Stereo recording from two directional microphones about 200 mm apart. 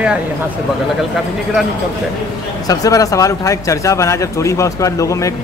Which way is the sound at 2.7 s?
15° left (ahead or behind).